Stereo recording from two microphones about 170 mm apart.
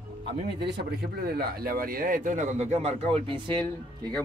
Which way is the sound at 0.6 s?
75° right (ahead or behind).